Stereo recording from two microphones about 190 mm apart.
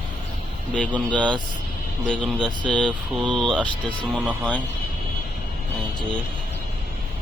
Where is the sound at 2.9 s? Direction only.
25° right (ahead or behind).